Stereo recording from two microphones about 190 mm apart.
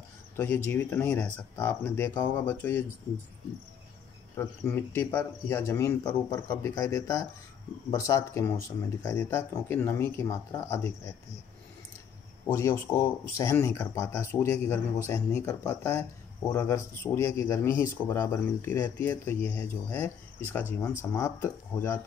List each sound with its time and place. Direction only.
0.4 s speech: 10° left (ahead or behind)
4.4 s speech: 10° left (ahead or behind)
12.4 s speech: 15° left (ahead or behind)